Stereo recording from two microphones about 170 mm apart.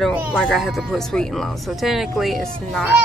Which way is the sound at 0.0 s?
10° right (ahead or behind).